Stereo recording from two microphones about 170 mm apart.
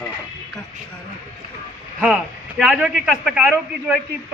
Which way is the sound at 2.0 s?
5° right (ahead or behind).